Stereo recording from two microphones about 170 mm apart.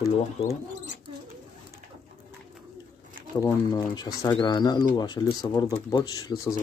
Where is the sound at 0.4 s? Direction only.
30° left (ahead or behind).